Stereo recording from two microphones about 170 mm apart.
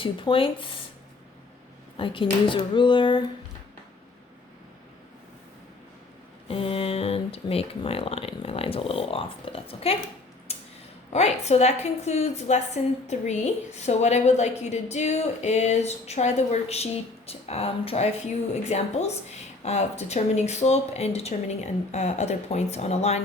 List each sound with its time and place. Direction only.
0.0 s speech: 30° left (ahead or behind)
2.0 s speech: 30° left (ahead or behind)
6.5 s a woman's voice: 35° left (ahead or behind)
10.5 s a sound: 35° left (ahead or behind)
11.1 s a woman's voice: 40° left (ahead or behind)